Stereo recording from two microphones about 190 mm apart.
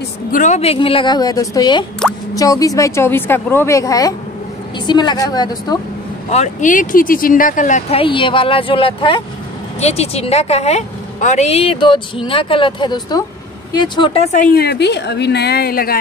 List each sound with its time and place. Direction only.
0.3 s a woman's voice: 40° left (ahead or behind); by 5.8 s 20° left (ahead or behind)
6.3 s a woman's voice: 40° left (ahead or behind)